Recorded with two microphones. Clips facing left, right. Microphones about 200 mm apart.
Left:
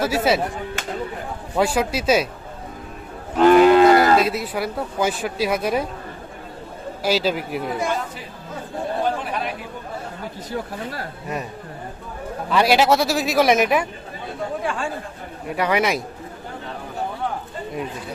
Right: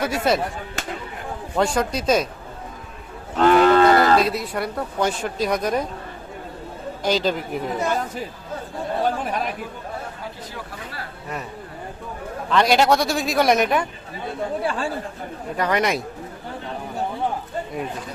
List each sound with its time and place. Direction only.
0.0 s speech: 5° left (ahead or behind)
1.5 s a woman's voice: 5° left (ahead or behind)
3.3 s cattle: 15° left (ahead or behind)
3.8 s speech: 5° left (ahead or behind)
7.0 s a woman's voice: 5° left (ahead or behind)
12.5 s speech: 5° left (ahead or behind)
14.6 s chatter: 35° right (ahead or behind)
15.5 s speech: 10° left (ahead or behind)